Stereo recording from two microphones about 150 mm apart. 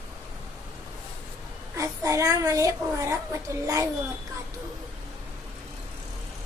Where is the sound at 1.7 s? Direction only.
20° right (ahead or behind).